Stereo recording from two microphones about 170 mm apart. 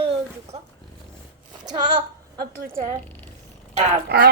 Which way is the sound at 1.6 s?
25° right (ahead or behind).